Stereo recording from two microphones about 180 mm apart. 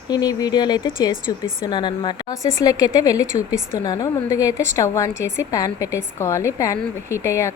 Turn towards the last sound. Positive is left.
turn(degrees=15)  # may be behind; listen again after turning